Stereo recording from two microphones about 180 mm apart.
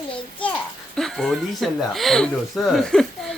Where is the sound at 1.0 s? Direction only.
Centre (ahead or behind).